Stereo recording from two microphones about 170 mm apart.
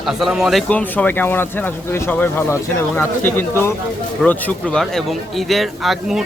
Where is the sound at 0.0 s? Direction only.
Centre (ahead or behind).